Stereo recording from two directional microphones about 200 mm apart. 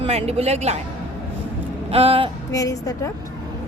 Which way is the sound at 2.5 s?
15° left (ahead or behind).